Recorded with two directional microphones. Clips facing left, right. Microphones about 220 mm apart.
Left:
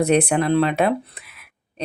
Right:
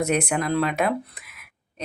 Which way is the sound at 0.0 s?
35° left (ahead or behind).